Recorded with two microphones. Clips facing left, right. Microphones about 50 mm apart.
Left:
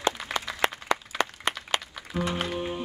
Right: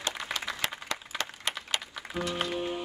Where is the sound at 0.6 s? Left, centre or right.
Left.